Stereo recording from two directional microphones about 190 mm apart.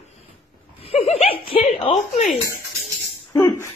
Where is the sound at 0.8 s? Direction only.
30° left (ahead or behind).